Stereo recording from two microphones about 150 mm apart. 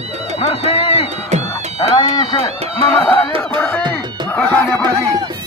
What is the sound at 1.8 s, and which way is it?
Chicken, 30° left (ahead or behind).